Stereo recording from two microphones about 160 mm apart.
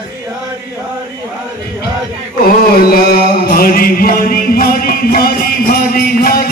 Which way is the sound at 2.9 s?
70° left (ahead or behind).